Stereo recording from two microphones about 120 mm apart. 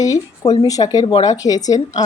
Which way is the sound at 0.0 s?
30° left (ahead or behind).